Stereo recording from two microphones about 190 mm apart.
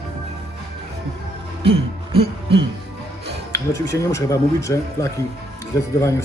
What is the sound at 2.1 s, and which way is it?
Music, 25° right (ahead or behind).